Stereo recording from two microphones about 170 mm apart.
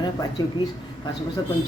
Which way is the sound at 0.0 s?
25° left (ahead or behind).